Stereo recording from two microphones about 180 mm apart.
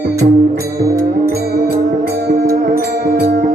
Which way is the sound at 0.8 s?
20° right (ahead or behind).